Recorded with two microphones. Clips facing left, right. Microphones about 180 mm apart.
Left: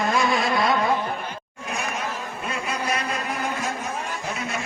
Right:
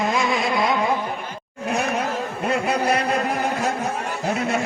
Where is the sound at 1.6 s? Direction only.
65° right (ahead or behind).